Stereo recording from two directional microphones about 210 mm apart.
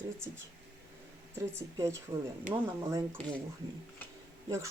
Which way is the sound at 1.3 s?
10° right (ahead or behind).